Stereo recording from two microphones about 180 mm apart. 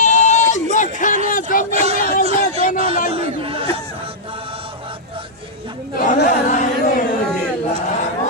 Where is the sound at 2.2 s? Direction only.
35° right (ahead or behind).